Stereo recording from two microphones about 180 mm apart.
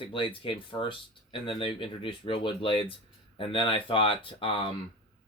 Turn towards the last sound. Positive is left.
turn(degrees=30)  # may be behind; listen again after turning